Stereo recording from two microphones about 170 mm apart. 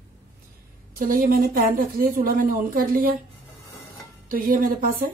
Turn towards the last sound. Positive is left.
turn(degrees=-55)  # may be behind; listen again after turning